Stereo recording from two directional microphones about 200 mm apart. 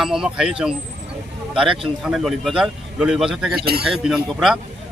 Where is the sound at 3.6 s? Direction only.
50° right (ahead or behind).